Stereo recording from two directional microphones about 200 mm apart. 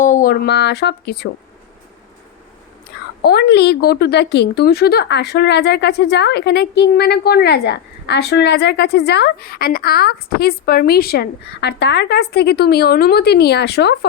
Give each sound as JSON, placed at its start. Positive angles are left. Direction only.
{"t": 0.0, "sound": "speech", "side_deg": 40}
{"t": 3.2, "sound": "a woman's voice", "side_deg": 55}